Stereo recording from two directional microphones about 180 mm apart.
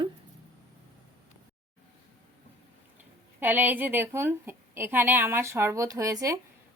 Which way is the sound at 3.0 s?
10° right (ahead or behind).